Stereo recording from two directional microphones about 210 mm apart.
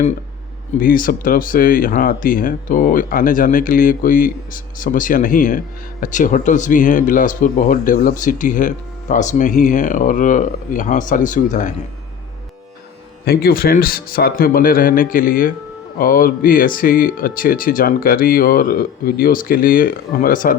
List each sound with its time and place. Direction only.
0.8 s speech: 40° left (ahead or behind)
13.2 s speech: 45° left (ahead or behind)